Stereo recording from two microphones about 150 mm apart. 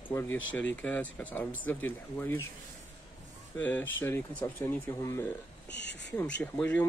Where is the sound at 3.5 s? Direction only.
10° left (ahead or behind).